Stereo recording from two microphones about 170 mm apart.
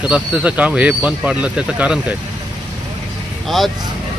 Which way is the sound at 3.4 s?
Centre (ahead or behind).